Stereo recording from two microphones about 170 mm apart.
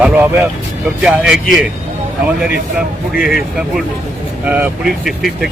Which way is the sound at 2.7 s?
5° right (ahead or behind).